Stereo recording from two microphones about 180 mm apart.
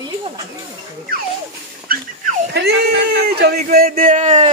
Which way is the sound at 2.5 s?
65° right (ahead or behind).